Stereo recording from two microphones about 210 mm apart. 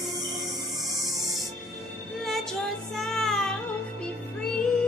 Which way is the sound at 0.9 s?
Centre (ahead or behind).